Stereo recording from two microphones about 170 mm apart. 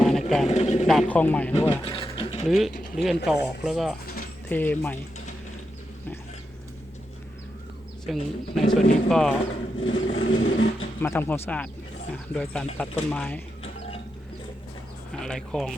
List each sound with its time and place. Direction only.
0.0 s a sound: centre (ahead or behind)
0.4 s vehicle: 40° left (ahead or behind)
0.9 s speech: 5° left (ahead or behind)
1.8 s a sound: 30° left (ahead or behind)
2.5 s speech: centre (ahead or behind)
4.4 s speech: 10° left (ahead or behind)
8.0 s speech: centre (ahead or behind)
9.8 s vehicle: 30° left (ahead or behind)
11.0 s speech: 15° left (ahead or behind)
15.2 s speech: 5° left (ahead or behind)